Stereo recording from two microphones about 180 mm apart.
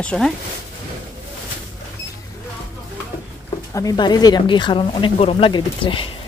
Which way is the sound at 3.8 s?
20° left (ahead or behind).